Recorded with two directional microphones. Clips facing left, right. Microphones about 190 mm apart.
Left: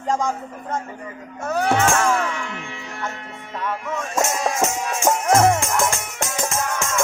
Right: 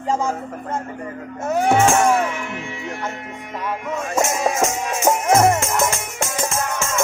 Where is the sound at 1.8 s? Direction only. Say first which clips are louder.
Right 3 dB; 15° right (ahead or behind).